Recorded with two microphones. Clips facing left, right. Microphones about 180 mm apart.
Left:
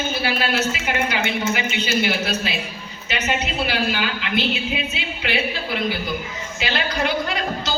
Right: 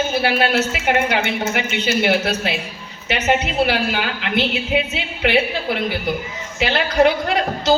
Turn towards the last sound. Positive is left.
turn(degrees=-65)  # may be behind; listen again after turning